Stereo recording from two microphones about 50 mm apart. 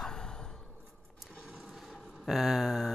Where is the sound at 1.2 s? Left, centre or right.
Centre.